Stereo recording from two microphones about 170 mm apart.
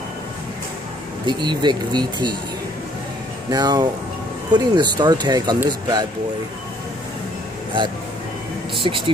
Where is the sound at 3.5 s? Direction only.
25° right (ahead or behind).